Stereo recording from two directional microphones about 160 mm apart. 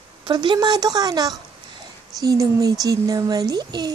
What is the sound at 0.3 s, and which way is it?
Speech, 30° right (ahead or behind).